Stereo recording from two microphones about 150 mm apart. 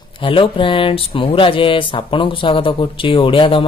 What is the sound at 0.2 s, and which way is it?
A man's voice, 35° left (ahead or behind).